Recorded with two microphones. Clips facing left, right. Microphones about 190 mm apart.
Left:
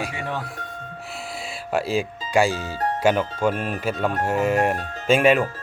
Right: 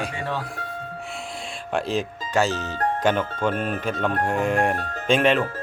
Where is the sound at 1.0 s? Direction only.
5° left (ahead or behind).